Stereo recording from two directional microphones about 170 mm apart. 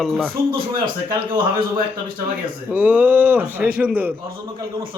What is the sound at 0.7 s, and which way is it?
Speech, 55° right (ahead or behind).